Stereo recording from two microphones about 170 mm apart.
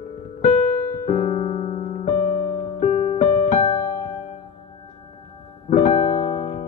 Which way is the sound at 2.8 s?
45° left (ahead or behind).